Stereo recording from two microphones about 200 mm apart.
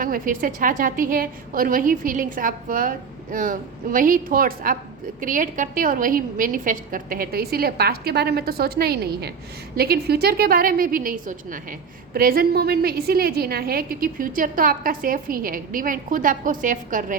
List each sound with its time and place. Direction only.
0.0 s a woman's voice: 45° right (ahead or behind)